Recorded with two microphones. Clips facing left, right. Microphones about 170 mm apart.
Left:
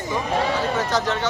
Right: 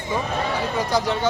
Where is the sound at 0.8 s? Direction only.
10° right (ahead or behind).